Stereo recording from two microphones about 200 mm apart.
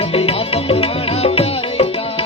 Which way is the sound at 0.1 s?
30° left (ahead or behind).